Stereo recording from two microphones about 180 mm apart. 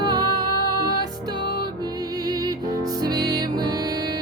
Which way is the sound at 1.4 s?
60° left (ahead or behind).